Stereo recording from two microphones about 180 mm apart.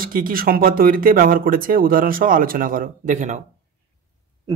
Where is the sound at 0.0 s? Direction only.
50° right (ahead or behind).